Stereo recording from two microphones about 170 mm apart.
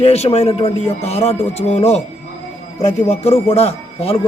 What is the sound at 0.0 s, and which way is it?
Speech, 35° left (ahead or behind).